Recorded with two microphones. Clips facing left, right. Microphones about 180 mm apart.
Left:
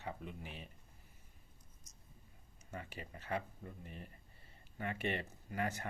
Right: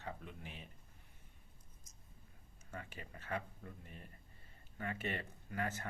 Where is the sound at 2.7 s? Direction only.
45° right (ahead or behind).